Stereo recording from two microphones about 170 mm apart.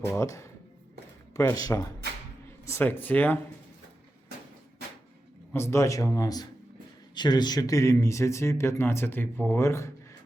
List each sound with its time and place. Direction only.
0.1 s speech: 15° left (ahead or behind)
5.5 s speech: 15° left (ahead or behind)